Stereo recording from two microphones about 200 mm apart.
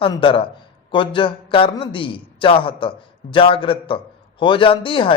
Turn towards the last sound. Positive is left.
turn(degrees=25)  # may be behind; listen again after turning